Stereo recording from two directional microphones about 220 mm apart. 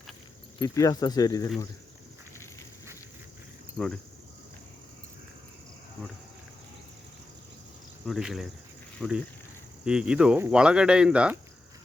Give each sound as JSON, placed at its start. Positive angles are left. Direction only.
{"t": 0.6, "sound": "speech", "side_deg": 15}
{"t": 8.0, "sound": "speech", "side_deg": 0}